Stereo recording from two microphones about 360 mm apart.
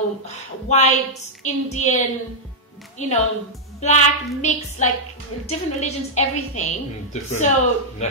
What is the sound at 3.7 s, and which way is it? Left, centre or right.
A woman's voice, centre.